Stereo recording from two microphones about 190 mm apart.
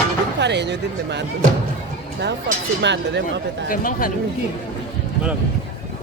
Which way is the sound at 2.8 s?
70° right (ahead or behind).